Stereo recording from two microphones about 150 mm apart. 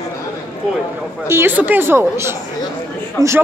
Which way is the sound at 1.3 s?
15° right (ahead or behind).